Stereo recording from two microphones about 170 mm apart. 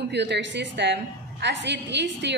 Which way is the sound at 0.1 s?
90° right.